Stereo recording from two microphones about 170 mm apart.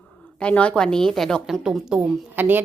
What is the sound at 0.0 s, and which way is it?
A woman's voice, 5° left (ahead or behind).